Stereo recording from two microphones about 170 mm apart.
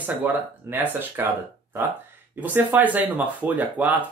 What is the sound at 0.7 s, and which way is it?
Speech, 10° right (ahead or behind).